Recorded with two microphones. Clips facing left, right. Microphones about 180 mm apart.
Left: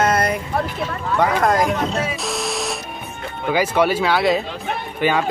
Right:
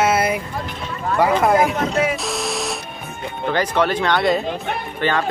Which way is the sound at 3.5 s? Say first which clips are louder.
Left 2 dB; 10° left (ahead or behind).